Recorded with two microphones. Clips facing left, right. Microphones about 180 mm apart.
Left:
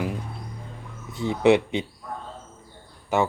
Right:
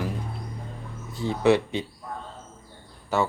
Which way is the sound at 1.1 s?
20° left (ahead or behind).